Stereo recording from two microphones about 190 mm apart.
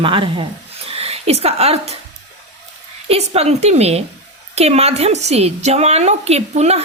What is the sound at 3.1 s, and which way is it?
A woman's voice, 35° right (ahead or behind).